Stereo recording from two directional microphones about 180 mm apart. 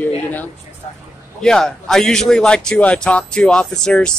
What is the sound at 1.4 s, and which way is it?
Speech, centre (ahead or behind).